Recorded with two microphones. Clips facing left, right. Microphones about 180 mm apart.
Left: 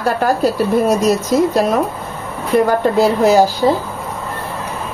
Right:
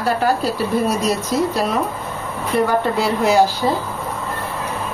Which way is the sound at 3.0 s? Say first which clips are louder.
Left 5 dB; 40° left (ahead or behind).